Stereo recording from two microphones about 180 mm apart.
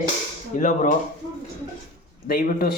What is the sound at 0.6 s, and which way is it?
Speech, 45° left (ahead or behind).